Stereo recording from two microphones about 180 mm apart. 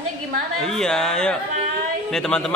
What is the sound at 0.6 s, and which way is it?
A man's voice, centre (ahead or behind).